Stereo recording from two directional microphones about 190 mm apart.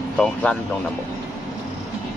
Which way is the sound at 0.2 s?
5° left (ahead or behind).